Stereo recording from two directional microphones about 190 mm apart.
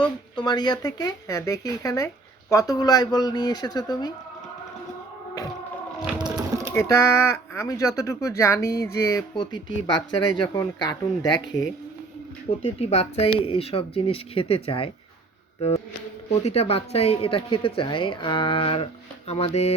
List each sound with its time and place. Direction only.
0.3 s a woman's voice: 20° left (ahead or behind)
6.1 s a sound: 20° right (ahead or behind)
6.7 s a woman's voice: 15° left (ahead or behind)
12.6 s a woman's voice: 35° left (ahead or behind)
16.4 s a woman's voice: 35° left (ahead or behind)